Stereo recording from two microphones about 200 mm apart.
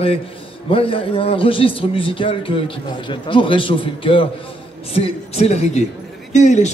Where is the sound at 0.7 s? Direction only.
25° left (ahead or behind).